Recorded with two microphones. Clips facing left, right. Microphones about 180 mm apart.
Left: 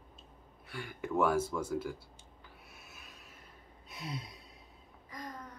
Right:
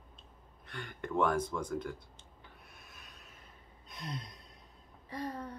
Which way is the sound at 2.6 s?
5° left (ahead or behind).